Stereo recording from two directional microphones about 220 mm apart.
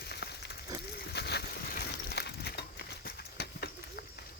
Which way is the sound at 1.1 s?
45° left (ahead or behind).